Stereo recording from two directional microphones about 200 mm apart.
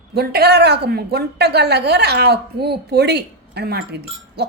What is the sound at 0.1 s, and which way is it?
A woman's voice, 50° right (ahead or behind).